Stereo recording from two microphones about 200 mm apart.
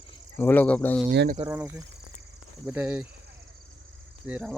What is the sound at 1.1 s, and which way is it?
Speech, 55° right (ahead or behind).